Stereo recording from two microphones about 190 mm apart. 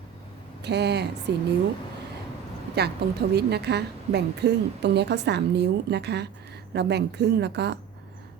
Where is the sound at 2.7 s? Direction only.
60° right (ahead or behind).